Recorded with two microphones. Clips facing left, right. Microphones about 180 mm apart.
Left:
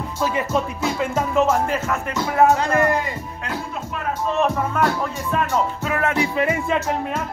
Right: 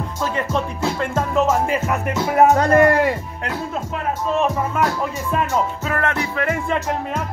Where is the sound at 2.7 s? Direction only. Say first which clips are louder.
Right 6 dB; 60° right (ahead or behind).